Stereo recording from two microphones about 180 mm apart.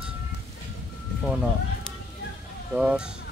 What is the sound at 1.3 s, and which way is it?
Speech, 5° right (ahead or behind).